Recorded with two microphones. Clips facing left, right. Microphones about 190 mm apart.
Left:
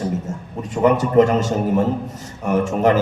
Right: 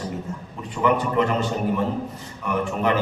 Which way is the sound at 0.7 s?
40° left (ahead or behind).